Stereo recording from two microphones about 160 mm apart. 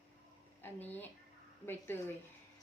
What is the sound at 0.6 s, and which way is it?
A woman's voice, 10° left (ahead or behind).